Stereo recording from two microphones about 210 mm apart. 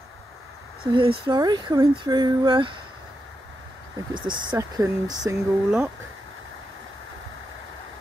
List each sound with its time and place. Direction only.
0.9 s speech: 25° right (ahead or behind)
4.1 s speech: 20° right (ahead or behind)